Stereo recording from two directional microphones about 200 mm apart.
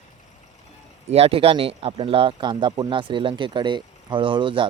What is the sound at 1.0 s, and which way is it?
Speech, 30° right (ahead or behind).